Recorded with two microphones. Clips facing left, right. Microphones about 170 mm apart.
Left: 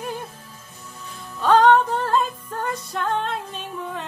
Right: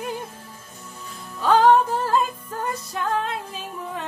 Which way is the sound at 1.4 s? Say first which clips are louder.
Left 1 dB; 5° right (ahead or behind).